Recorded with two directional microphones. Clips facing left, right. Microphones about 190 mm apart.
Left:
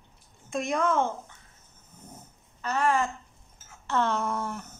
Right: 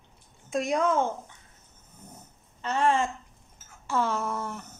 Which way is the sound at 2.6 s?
25° right (ahead or behind).